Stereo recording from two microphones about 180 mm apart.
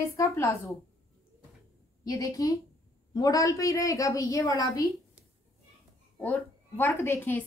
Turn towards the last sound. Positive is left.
turn(degrees=10)  # may be behind; listen again after turning